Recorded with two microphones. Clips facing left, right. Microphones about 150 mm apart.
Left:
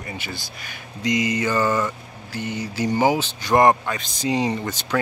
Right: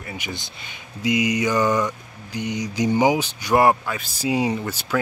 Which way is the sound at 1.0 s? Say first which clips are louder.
Right 1 dB; 10° right (ahead or behind).